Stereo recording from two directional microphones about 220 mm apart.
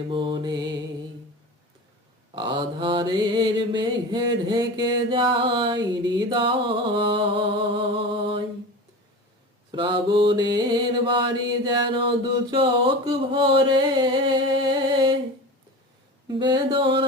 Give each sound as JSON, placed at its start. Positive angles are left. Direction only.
{"t": 0.1, "sound": "mantra", "side_deg": -20}
{"t": 2.3, "sound": "mantra", "side_deg": -20}
{"t": 9.7, "sound": "mantra", "side_deg": -20}
{"t": 16.4, "sound": "mantra", "side_deg": -20}